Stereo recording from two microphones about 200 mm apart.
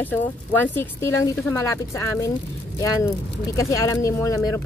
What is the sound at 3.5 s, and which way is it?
A woman's voice, 15° left (ahead or behind).